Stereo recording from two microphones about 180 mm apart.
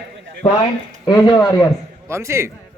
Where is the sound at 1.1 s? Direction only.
20° left (ahead or behind).